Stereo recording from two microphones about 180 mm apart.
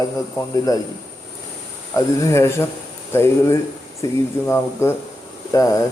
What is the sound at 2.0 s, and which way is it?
A man's voice, 15° left (ahead or behind).